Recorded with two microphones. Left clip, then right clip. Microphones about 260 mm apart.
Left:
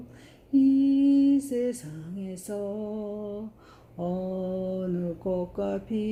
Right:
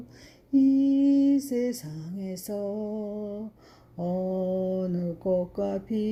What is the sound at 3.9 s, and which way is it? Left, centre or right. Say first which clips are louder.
Mantra: right 2 dB; right.